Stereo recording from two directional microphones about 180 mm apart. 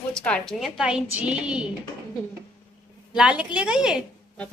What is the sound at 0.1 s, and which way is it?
A woman's voice, 5° left (ahead or behind).